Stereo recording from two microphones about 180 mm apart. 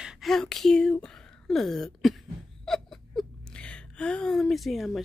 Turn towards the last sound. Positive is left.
turn(degrees=0)  # may be behind; listen again after turning